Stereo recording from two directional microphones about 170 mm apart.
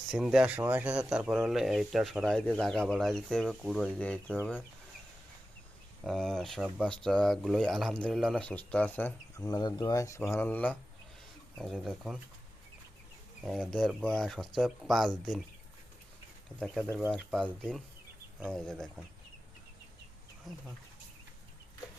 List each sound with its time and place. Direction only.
0.1 s speech: 5° right (ahead or behind)
6.1 s speech: 5° left (ahead or behind)
9.5 s speech: 25° left (ahead or behind); by 12.2 s centre (ahead or behind)
13.4 s speech: centre (ahead or behind)
16.6 s speech: 5° left (ahead or behind)
20.5 s speech: centre (ahead or behind)